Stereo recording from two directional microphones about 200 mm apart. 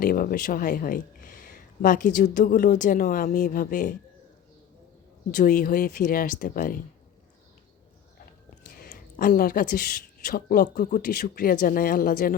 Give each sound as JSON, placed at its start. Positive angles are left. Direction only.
{"t": 0.0, "sound": "speech", "side_deg": 45}
{"t": 5.3, "sound": "speech", "side_deg": 40}
{"t": 8.7, "sound": "speech", "side_deg": 45}